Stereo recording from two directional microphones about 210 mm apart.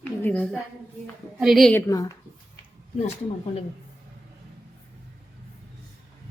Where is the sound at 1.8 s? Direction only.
15° left (ahead or behind).